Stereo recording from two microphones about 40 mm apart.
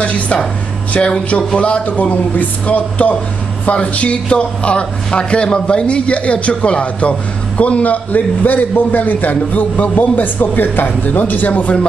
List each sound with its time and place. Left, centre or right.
0.0 s speech: left
1.6 s speech: left